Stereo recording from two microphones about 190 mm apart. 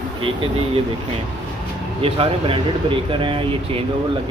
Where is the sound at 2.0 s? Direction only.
30° right (ahead or behind).